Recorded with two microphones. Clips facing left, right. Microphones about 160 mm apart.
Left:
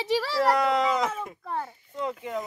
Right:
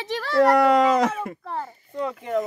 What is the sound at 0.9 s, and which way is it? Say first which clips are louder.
Speech: right 6 dB; 65° right (ahead or behind).